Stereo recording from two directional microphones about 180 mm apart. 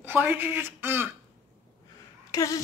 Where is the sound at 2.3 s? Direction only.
20° left (ahead or behind).